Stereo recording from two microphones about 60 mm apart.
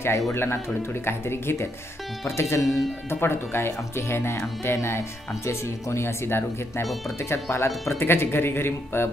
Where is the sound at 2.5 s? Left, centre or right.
Left.